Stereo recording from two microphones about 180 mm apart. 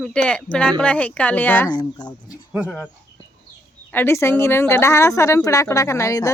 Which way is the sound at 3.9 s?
15° left (ahead or behind).